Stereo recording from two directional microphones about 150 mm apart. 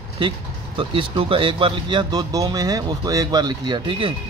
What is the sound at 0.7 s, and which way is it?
Speech, 35° right (ahead or behind).